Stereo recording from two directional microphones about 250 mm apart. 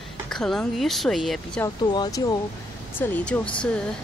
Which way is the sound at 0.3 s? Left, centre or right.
Centre.